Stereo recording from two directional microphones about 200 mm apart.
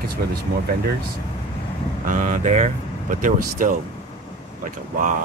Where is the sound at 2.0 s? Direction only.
40° right (ahead or behind).